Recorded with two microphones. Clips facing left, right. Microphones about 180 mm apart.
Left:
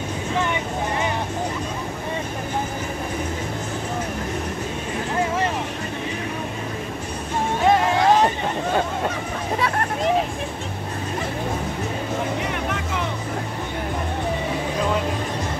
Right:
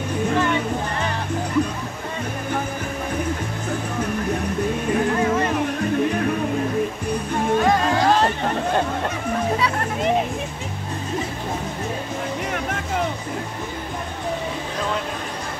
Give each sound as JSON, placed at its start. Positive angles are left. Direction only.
{"t": 7.6, "sound": "chatter", "side_deg": 25}